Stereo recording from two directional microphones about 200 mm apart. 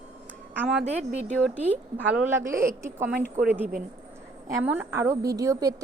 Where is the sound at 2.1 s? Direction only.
15° right (ahead or behind).